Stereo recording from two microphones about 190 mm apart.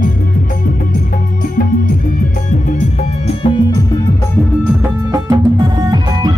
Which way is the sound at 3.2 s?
25° left (ahead or behind).